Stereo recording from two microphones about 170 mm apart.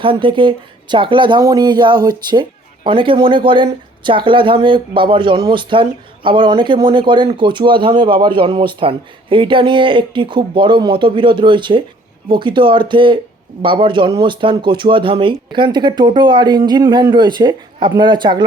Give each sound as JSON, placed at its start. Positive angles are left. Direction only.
{"t": 0.0, "sound": "speech", "side_deg": -30}